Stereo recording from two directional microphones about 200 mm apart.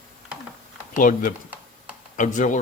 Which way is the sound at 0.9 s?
45° left (ahead or behind).